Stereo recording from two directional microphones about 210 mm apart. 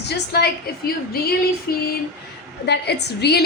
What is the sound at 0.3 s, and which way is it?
Speech, 50° left (ahead or behind).